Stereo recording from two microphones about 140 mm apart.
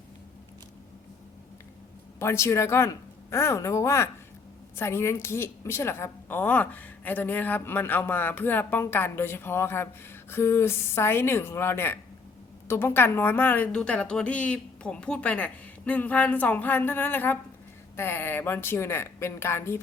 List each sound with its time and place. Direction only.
2.1 s a woman's voice: 20° left (ahead or behind)